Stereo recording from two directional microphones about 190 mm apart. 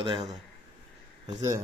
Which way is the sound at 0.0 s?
25° right (ahead or behind).